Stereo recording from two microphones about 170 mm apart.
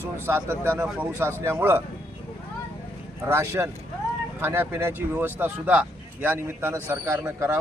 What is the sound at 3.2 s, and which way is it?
Speech, 15° right (ahead or behind).